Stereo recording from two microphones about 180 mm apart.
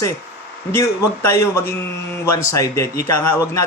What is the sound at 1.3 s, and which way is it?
Speech, 15° left (ahead or behind).